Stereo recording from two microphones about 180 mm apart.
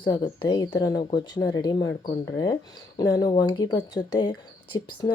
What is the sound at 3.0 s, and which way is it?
Speech, 20° left (ahead or behind).